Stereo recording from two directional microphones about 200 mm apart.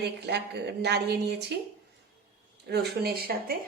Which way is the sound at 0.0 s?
60° right (ahead or behind).